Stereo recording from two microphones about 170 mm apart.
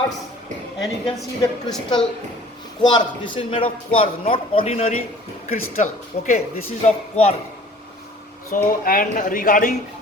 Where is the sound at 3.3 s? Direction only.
35° left (ahead or behind).